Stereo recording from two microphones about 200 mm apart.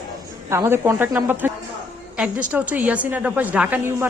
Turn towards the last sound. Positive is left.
turn(degrees=-10)  # may be behind; listen again after turning